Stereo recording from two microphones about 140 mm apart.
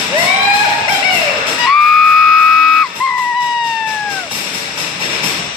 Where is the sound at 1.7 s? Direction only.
Centre (ahead or behind).